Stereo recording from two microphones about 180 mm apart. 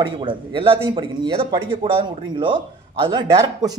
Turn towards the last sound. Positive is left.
turn(degrees=-25)  # may be behind; listen again after turning